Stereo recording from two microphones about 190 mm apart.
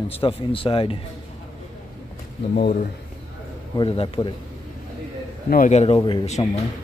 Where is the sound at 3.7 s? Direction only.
25° left (ahead or behind).